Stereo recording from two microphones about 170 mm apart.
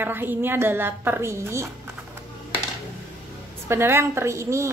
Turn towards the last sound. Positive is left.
turn(degrees=-15)  # may be behind; listen again after turning